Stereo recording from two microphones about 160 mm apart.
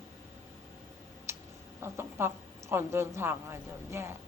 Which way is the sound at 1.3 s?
15° right (ahead or behind).